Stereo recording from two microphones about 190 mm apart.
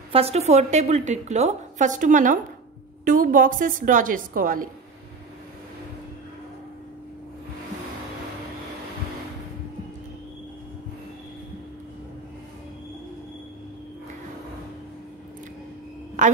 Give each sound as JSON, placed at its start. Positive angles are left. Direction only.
{"t": 0.1, "sound": "a woman's voice", "side_deg": -30}
{"t": 16.2, "sound": "a woman's voice", "side_deg": -40}